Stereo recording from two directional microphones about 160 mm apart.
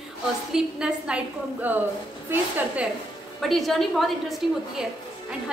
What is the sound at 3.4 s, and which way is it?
A woman's voice, centre (ahead or behind).